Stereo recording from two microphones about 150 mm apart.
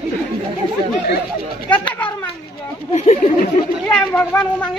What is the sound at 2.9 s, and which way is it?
Speech, 50° left (ahead or behind).